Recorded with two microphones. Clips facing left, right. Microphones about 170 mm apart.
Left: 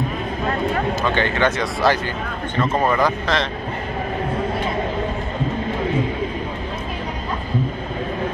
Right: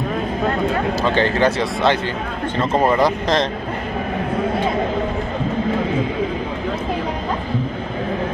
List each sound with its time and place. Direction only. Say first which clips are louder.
1.0 s speech: right 4 dB; 35° right (ahead or behind)